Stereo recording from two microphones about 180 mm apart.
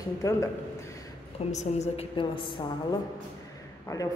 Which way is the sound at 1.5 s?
40° left (ahead or behind).